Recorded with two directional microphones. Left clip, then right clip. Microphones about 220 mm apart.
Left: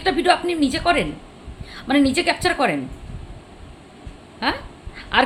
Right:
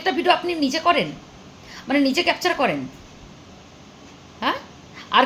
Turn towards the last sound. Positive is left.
turn(degrees=10)  # may be behind; listen again after turning